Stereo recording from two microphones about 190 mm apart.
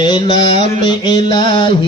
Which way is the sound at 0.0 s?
25° left (ahead or behind).